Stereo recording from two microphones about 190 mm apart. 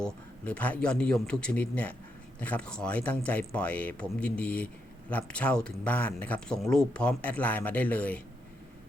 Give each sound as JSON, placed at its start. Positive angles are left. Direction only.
{"t": 0.0, "sound": "a man's voice", "side_deg": 5}